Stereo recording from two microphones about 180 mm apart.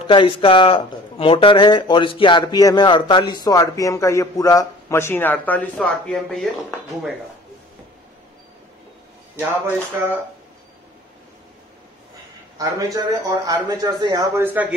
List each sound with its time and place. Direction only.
0.0 s speech: 30° left (ahead or behind); by 6.5 s 5° left (ahead or behind)
9.5 s speech: 10° right (ahead or behind)
12.5 s speech: 20° right (ahead or behind)